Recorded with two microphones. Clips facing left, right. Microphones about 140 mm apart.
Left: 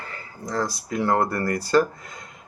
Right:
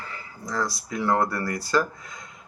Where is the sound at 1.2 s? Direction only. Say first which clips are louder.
Left 4 dB; 55° left (ahead or behind).